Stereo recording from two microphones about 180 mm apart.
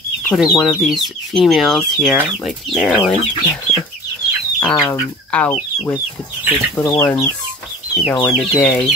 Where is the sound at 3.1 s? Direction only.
5° left (ahead or behind).